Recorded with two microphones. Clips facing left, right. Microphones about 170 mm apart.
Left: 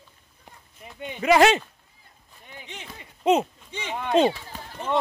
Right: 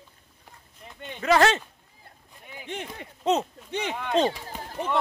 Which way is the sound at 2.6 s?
55° right (ahead or behind).